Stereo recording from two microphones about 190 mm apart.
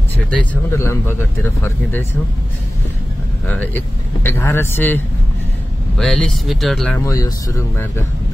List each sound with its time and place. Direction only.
0.3 s speech: 10° left (ahead or behind)
3.4 s speech: 10° left (ahead or behind)
7.1 s speech: 15° left (ahead or behind)